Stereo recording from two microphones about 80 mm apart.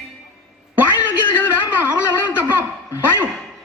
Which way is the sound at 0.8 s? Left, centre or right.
Right.